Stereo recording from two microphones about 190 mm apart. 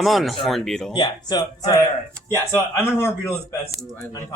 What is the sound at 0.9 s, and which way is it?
Speech, 20° left (ahead or behind).